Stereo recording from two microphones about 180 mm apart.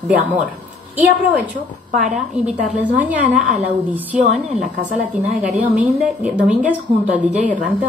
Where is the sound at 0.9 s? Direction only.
10° right (ahead or behind).